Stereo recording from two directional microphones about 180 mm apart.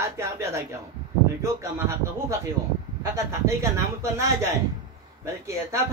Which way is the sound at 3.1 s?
15° right (ahead or behind).